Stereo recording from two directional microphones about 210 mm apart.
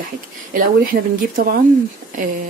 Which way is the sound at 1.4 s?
45° right (ahead or behind).